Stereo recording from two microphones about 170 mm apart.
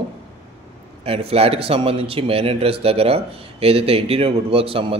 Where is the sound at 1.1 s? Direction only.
35° right (ahead or behind).